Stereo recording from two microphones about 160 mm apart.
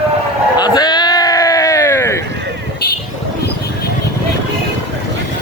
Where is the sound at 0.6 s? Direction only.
25° left (ahead or behind).